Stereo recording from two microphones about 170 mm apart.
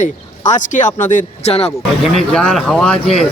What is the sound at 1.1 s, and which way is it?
Speech, 35° left (ahead or behind).